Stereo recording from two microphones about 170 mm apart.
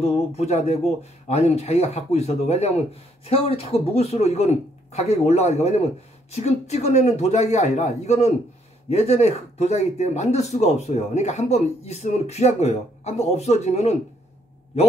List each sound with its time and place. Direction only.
0.0 s speech: 40° left (ahead or behind)